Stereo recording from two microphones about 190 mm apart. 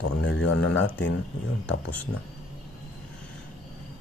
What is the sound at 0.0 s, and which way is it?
Speech, 90° left.